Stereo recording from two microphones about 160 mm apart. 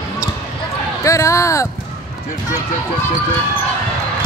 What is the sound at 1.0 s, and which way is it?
Speech, 20° left (ahead or behind).